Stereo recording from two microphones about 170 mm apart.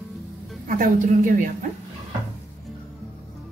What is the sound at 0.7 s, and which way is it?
Speech, 50° right (ahead or behind).